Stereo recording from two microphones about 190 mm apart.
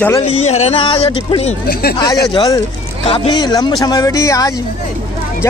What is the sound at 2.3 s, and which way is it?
Speech, 20° left (ahead or behind).